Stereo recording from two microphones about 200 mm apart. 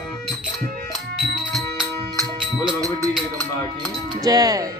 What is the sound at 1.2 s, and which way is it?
Music, centre (ahead or behind).